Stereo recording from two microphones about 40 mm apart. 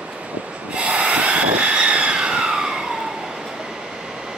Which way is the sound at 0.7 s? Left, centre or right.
Right.